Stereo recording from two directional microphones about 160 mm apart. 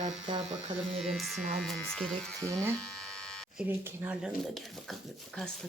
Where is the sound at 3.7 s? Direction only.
10° right (ahead or behind).